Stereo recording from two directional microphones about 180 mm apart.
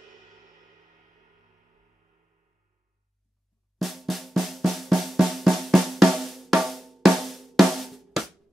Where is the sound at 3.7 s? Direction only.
Centre (ahead or behind).